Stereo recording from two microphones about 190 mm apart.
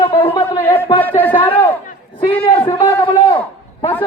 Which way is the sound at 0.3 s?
10° left (ahead or behind).